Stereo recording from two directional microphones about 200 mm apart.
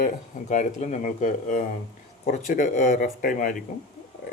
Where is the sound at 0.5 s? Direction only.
40° left (ahead or behind).